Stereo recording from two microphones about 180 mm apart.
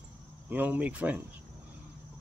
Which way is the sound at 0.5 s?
10° right (ahead or behind).